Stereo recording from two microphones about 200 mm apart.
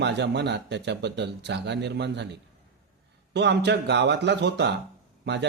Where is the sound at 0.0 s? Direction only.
60° right (ahead or behind).